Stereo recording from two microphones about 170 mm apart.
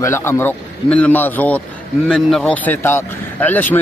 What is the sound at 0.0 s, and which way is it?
A man's voice, 15° left (ahead or behind).